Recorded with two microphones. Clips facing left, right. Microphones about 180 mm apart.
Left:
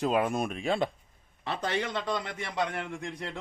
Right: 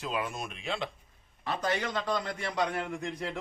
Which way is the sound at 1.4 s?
25° left (ahead or behind).